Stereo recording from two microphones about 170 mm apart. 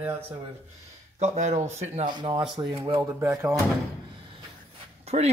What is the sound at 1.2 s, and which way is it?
Speech, 40° right (ahead or behind).